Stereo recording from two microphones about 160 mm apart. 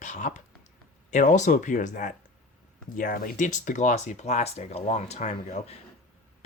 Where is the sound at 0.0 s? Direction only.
50° left (ahead or behind).